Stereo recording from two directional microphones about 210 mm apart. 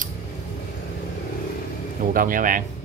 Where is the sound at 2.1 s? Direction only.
40° right (ahead or behind).